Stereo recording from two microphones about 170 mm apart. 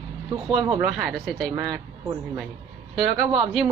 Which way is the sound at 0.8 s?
5° right (ahead or behind).